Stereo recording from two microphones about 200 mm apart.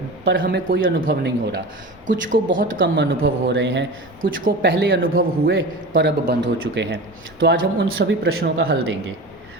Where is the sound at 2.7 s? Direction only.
70° right (ahead or behind).